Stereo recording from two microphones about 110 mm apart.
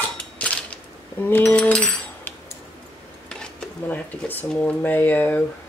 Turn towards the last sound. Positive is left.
turn(degrees=15)  # may be behind; listen again after turning